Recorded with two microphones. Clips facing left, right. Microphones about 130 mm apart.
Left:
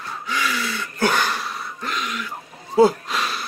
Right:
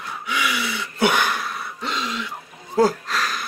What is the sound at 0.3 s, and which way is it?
Gasp, 15° right (ahead or behind).